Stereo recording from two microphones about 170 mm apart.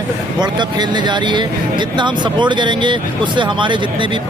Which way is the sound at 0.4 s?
25° right (ahead or behind).